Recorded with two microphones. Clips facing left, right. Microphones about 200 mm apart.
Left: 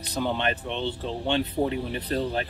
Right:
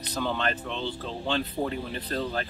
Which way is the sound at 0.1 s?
20° left (ahead or behind).